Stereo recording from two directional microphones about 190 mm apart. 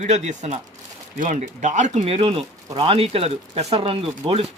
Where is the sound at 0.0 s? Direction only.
35° right (ahead or behind).